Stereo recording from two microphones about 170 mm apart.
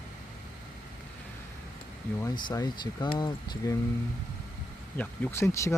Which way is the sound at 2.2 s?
20° left (ahead or behind).